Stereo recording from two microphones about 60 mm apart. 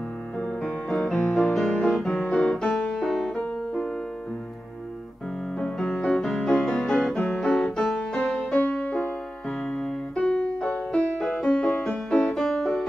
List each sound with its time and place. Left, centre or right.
0.4 s music: centre
5.6 s music: centre
8.6 s music: centre
9.7 s keyboard: centre
10.9 s music: centre
12.3 s music: centre